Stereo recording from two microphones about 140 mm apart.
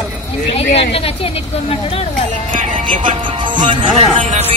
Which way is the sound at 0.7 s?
45° left (ahead or behind).